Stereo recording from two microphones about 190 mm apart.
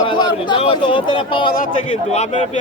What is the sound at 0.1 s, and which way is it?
Speech, 25° left (ahead or behind).